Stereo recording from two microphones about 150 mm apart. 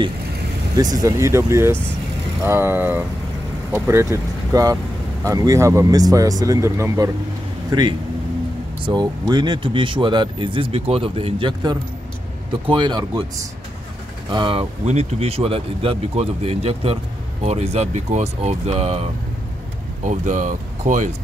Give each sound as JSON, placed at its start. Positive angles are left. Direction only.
{"t": 0.7, "sound": "speech", "side_deg": -25}
{"t": 8.8, "sound": "speech", "side_deg": -25}
{"t": 14.3, "sound": "speech", "side_deg": -35}
{"t": 20.1, "sound": "speech", "side_deg": -55}